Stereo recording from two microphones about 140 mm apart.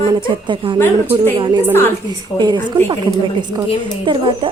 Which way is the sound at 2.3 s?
30° right (ahead or behind).